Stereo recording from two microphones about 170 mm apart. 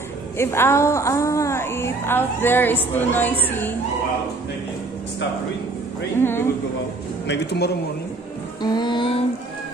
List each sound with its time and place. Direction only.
0.4 s a woman's voice: 15° left (ahead or behind)
6.1 s a woman's voice: 15° left (ahead or behind)
7.2 s a man's voice: 75° left (ahead or behind)
8.6 s music: 25° left (ahead or behind)